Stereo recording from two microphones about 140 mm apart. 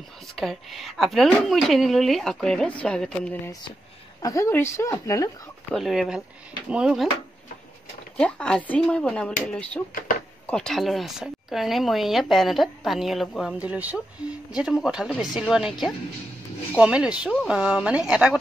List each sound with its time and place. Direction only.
0.4 s speech: centre (ahead or behind)
4.2 s a woman's voice: 25° left (ahead or behind)
5.7 s speech: centre (ahead or behind)
8.2 s speech: 10° left (ahead or behind)